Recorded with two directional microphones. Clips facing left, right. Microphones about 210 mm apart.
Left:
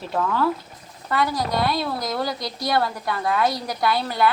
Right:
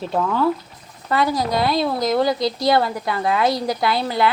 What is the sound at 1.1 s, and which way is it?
A woman's voice, 20° right (ahead or behind).